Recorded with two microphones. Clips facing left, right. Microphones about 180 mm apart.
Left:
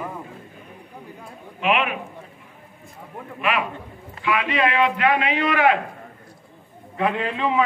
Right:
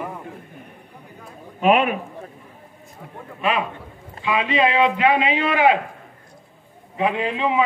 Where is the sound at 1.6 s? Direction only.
40° right (ahead or behind).